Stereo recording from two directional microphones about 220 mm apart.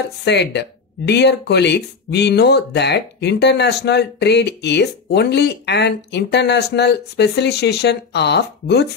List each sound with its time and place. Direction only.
0.2 s speech: 50° left (ahead or behind)